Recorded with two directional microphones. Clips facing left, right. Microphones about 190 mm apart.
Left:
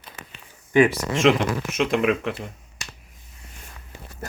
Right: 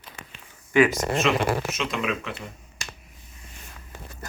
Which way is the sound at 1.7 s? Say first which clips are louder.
Left 7 dB; 55° left (ahead or behind).